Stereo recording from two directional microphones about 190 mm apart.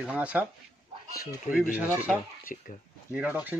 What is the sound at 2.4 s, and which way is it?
Speech, 45° left (ahead or behind).